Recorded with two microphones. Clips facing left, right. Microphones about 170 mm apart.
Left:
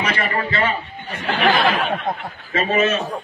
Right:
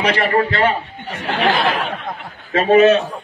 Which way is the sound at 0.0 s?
65° right (ahead or behind).